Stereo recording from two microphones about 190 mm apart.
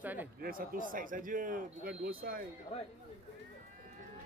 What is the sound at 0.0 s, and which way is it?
Speech, 10° right (ahead or behind).